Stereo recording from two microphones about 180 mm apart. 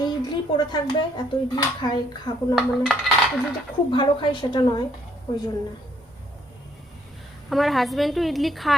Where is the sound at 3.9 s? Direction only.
25° left (ahead or behind).